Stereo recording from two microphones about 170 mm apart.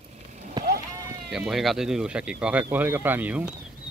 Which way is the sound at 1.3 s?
Centre (ahead or behind).